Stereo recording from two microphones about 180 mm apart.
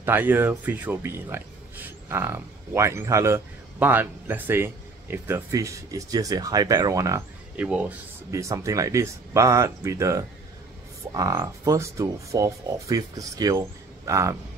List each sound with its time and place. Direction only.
0.0 s speech: 10° right (ahead or behind)